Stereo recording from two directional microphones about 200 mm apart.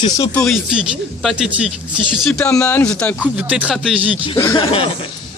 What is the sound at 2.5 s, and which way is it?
Speech, 10° left (ahead or behind).